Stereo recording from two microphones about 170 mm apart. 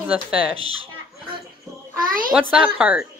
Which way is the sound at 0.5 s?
35° right (ahead or behind).